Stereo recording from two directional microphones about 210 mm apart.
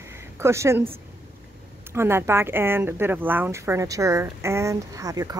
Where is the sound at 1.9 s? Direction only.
10° right (ahead or behind).